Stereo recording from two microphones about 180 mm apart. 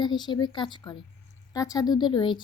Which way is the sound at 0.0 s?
25° left (ahead or behind).